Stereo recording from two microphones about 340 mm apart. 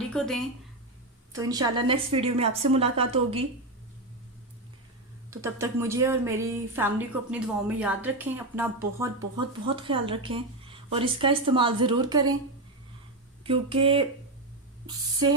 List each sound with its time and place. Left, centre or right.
0.1 s speech: centre
1.3 s a woman's voice: centre
5.3 s a woman's voice: centre
13.4 s a woman's voice: centre